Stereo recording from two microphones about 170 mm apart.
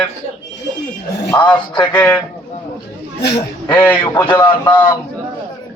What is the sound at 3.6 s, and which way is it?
Speech, 10° left (ahead or behind).